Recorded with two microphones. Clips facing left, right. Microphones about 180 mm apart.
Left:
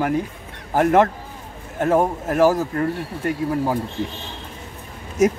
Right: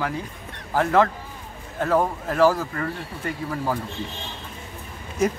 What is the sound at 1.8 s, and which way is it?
Speech, 20° left (ahead or behind).